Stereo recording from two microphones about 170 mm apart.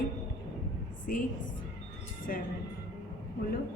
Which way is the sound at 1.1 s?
55° left (ahead or behind).